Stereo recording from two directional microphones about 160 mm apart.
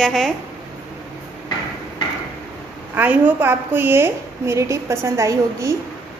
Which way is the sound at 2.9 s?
10° right (ahead or behind).